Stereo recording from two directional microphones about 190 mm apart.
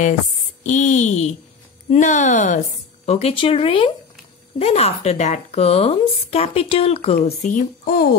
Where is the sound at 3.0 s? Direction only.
30° left (ahead or behind).